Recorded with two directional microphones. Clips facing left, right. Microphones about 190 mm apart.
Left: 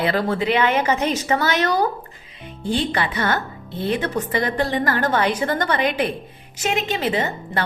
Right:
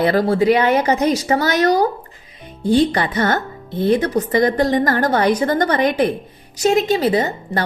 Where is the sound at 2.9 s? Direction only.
40° right (ahead or behind).